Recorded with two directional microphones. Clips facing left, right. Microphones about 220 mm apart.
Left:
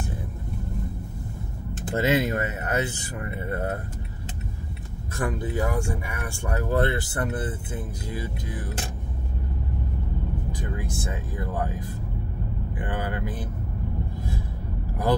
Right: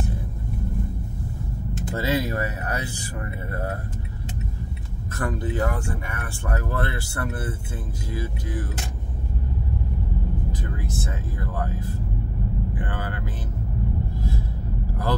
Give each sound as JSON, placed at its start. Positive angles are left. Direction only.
{"t": 2.0, "sound": "speech", "side_deg": 20}
{"t": 5.1, "sound": "speech", "side_deg": 15}
{"t": 10.9, "sound": "speech", "side_deg": 15}
{"t": 12.8, "sound": "speech", "side_deg": 15}